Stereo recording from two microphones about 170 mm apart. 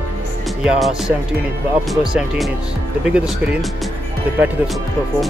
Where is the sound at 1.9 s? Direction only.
Centre (ahead or behind).